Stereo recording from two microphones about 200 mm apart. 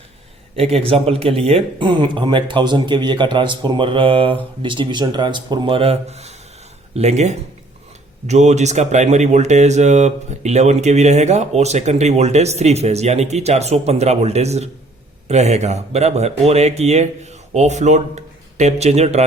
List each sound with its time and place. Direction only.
0.5 s speech: 30° right (ahead or behind)